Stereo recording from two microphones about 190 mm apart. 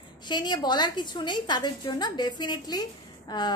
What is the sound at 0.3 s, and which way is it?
A woman's voice, 25° left (ahead or behind).